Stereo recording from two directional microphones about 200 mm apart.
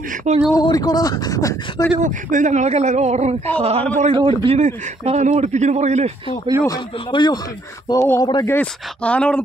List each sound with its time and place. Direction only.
0.3 s a man's voice: 35° right (ahead or behind)
0.6 s speech: 20° left (ahead or behind)
2.0 s a man's voice: 40° right (ahead or behind)
6.6 s speech: 20° left (ahead or behind)
8.5 s speech: 5° left (ahead or behind)